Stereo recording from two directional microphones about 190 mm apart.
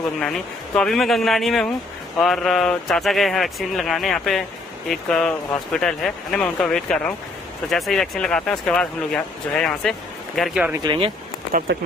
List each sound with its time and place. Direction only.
0.2 s speech: 5° left (ahead or behind)
10.8 s speech: 25° right (ahead or behind)
11.7 s speech: 65° right (ahead or behind)